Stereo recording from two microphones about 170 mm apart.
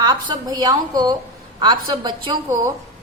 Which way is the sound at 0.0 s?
25° right (ahead or behind).